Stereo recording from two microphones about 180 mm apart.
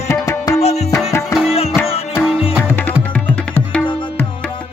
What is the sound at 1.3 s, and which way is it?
Music, centre (ahead or behind).